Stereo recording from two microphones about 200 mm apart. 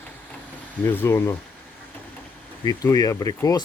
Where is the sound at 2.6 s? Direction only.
20° left (ahead or behind).